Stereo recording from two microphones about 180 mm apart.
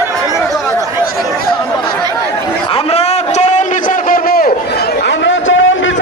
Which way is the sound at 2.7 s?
35° left (ahead or behind).